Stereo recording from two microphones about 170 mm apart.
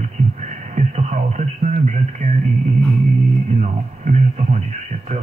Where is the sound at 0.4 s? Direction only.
45° right (ahead or behind).